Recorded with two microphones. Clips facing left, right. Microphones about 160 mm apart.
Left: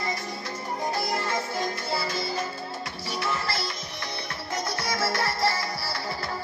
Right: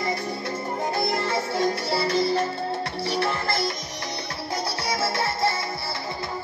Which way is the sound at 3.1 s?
60° right (ahead or behind).